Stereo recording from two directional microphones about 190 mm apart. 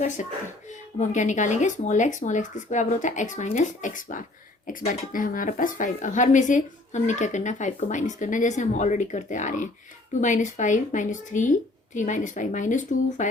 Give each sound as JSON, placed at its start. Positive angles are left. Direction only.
{"t": 0.2, "sound": "speech", "side_deg": 40}